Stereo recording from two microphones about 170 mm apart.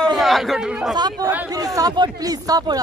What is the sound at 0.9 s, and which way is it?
Speech, 25° right (ahead or behind).